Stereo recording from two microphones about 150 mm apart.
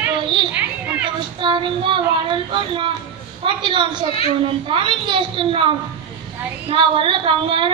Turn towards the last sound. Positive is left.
turn(degrees=-35)  # may be behind; listen again after turning